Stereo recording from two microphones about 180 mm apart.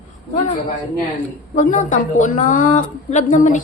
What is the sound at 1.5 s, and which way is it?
A woman's voice, 45° left (ahead or behind).